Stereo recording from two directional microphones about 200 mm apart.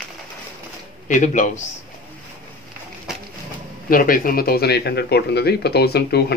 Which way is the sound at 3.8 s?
45° left (ahead or behind).